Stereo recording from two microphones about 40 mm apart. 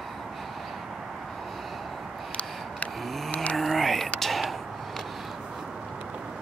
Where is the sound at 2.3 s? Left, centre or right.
Left.